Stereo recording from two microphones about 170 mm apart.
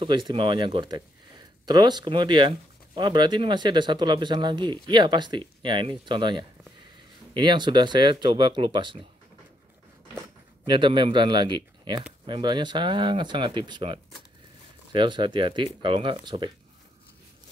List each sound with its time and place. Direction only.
0.0 s speech: 30° right (ahead or behind)
10.6 s speech: 30° right (ahead or behind)